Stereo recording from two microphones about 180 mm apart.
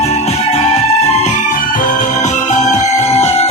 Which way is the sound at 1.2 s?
45° left (ahead or behind).